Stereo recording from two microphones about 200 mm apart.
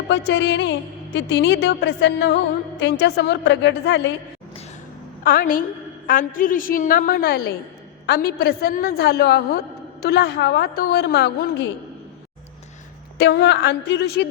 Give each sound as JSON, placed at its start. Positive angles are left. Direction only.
{"t": 0.1, "sound": "a woman's voice", "side_deg": 60}
{"t": 5.2, "sound": "a woman's voice", "side_deg": 45}
{"t": 13.1, "sound": "a woman's voice", "side_deg": 55}